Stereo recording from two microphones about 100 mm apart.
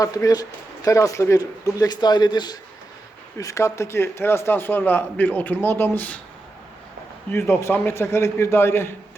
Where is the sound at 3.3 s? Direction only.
30° left (ahead or behind).